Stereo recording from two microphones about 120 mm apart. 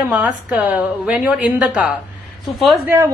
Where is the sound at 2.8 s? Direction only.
25° right (ahead or behind).